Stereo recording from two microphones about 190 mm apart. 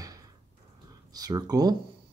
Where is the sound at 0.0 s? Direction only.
20° right (ahead or behind).